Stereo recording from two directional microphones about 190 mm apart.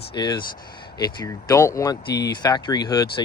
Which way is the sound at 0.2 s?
25° left (ahead or behind).